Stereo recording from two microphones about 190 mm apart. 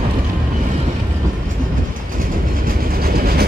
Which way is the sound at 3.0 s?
55° right (ahead or behind).